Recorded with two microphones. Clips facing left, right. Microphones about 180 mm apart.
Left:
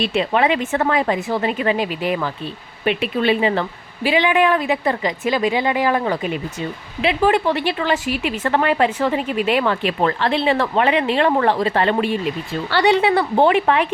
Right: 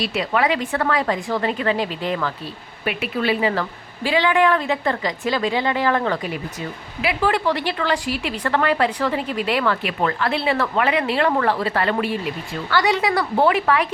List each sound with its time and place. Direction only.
0.0 s a woman's voice: 25° left (ahead or behind)
2.8 s a woman's voice: 25° left (ahead or behind)
9.8 s a woman's voice: 30° left (ahead or behind)